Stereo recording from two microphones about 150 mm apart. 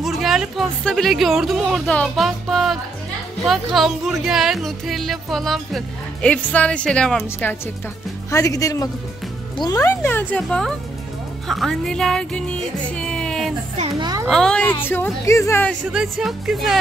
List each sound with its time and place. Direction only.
0.0 s a woman's voice: centre (ahead or behind); by 9.9 s 25° left (ahead or behind)
10.0 s a woman's voice: 10° left (ahead or behind)
12.9 s music: 5° left (ahead or behind)
13.9 s a child's voice: 30° right (ahead or behind)
14.3 s a woman's voice: 5° left (ahead or behind)
15.8 s speech: 5° right (ahead or behind)